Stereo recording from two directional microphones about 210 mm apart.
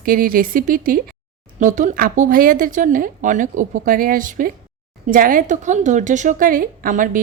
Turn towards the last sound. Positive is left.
turn(degrees=-40)  # may be behind; listen again after turning